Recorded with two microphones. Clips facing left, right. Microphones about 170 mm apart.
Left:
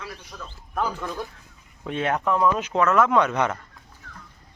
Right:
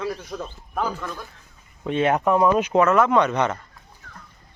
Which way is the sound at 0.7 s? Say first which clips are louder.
Even; 10° right (ahead or behind).